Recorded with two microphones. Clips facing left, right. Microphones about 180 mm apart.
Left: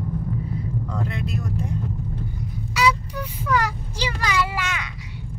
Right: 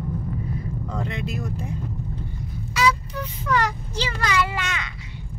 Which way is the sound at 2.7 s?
10° left (ahead or behind).